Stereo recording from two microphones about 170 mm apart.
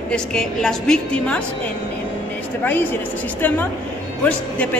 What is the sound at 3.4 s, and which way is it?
Speech, 10° left (ahead or behind).